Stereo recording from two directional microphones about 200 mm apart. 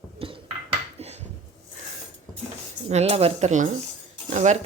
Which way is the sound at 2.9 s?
35° right (ahead or behind).